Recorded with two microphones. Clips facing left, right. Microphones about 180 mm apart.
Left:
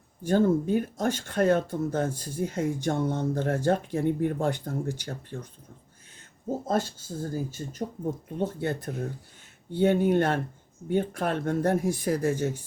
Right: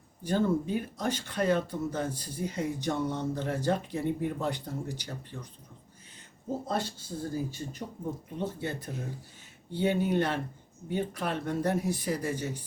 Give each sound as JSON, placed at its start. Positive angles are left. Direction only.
{"t": 0.2, "sound": "speech", "side_deg": 50}
{"t": 6.7, "sound": "speech", "side_deg": 45}